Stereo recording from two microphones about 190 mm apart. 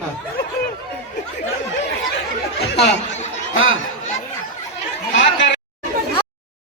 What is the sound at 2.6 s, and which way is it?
Speech, 60° left (ahead or behind).